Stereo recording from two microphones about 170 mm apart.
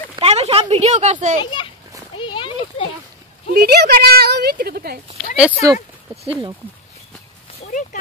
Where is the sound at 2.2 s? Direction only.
30° left (ahead or behind).